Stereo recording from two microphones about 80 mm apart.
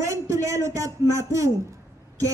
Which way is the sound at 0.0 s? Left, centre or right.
Right.